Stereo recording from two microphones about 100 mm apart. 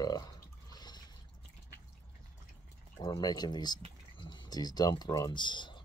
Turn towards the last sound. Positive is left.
turn(degrees=50)  # may be behind; listen again after turning